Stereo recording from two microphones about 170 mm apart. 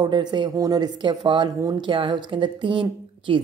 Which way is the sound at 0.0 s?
25° right (ahead or behind).